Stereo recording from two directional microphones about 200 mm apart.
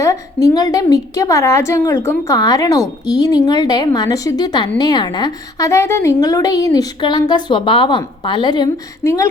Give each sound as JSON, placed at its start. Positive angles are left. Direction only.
{"t": 0.0, "sound": "a woman's voice", "side_deg": 15}